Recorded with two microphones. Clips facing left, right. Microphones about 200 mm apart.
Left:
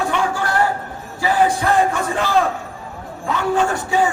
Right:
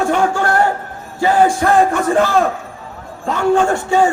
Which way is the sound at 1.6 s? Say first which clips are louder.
Right 4 dB; 45° right (ahead or behind).